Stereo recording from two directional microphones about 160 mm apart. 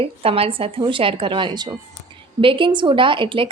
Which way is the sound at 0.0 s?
35° right (ahead or behind).